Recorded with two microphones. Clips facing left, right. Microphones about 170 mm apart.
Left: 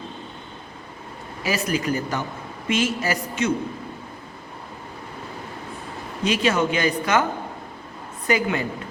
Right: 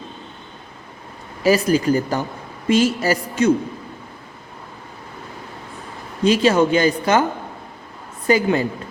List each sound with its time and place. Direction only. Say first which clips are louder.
1.5 s speech: right 8 dB; 35° right (ahead or behind)
6.2 s speech: right 6 dB; 35° right (ahead or behind)
8.3 s speech: right 5 dB; 30° right (ahead or behind)